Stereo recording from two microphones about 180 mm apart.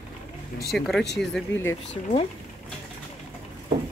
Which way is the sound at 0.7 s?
Centre (ahead or behind).